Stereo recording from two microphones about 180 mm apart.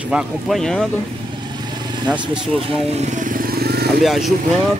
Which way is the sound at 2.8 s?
35° right (ahead or behind).